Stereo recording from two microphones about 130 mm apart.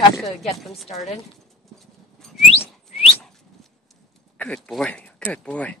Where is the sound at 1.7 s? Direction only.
Centre (ahead or behind).